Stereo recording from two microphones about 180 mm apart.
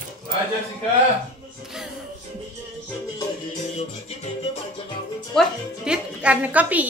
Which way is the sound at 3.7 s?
35° left (ahead or behind).